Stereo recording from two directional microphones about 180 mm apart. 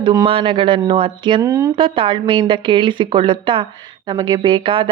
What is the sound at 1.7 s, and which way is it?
A woman's voice, 30° right (ahead or behind).